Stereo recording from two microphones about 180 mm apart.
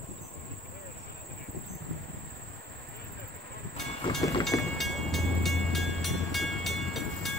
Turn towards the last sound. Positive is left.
turn(degrees=0)  # may be behind; listen again after turning